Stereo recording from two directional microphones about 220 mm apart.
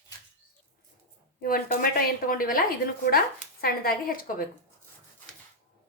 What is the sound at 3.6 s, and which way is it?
Speech, 40° left (ahead or behind).